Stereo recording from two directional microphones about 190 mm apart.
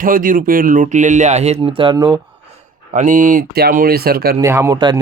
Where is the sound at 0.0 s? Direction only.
45° right (ahead or behind); by 2.2 s 20° right (ahead or behind).